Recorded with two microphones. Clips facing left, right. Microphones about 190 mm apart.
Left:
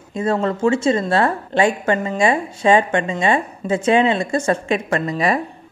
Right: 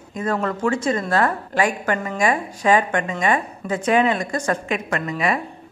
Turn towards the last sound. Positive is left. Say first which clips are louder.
# left 3 dB
turn(degrees=35)  # may be behind; listen again after turning